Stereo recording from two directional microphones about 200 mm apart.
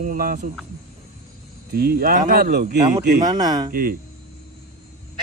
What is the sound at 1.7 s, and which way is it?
Speech, 50° right (ahead or behind).